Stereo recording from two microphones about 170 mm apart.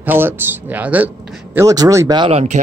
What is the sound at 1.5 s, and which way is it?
Speech, 20° right (ahead or behind).